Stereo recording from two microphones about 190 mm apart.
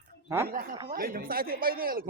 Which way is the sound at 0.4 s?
50° right (ahead or behind).